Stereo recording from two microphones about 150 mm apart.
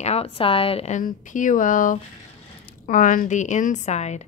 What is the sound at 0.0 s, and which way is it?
A woman's voice, 40° left (ahead or behind).